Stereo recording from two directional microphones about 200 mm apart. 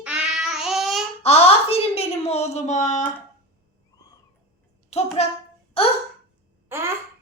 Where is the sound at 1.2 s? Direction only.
30° left (ahead or behind).